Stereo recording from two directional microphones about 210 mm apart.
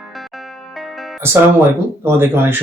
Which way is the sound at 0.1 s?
Centre (ahead or behind).